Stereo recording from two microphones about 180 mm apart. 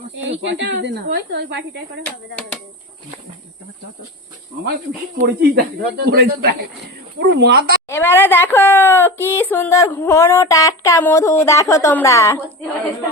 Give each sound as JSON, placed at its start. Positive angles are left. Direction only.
{"t": 0.2, "sound": "speech", "side_deg": -85}
{"t": 5.2, "sound": "speech", "side_deg": -65}
{"t": 7.9, "sound": "speech", "side_deg": 15}